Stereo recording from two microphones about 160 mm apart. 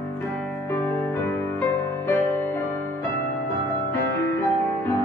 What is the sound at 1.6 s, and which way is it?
Music, 15° left (ahead or behind).